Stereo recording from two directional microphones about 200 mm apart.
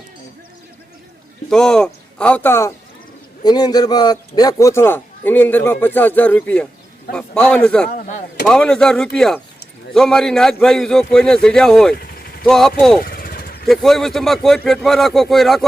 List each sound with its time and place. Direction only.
1.5 s a man's voice: 5° left (ahead or behind)
7.9 s speech: 40° left (ahead or behind)
8.4 s a man's voice: 5° left (ahead or behind)
13.1 s vehicle: 50° left (ahead or behind)
13.7 s a man's voice: centre (ahead or behind)